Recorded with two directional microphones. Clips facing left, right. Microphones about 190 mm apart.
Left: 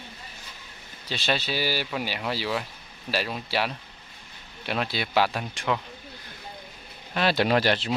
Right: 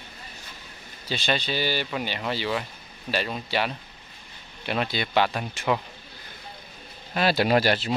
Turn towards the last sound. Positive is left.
turn(degrees=-5)  # may be behind; listen again after turning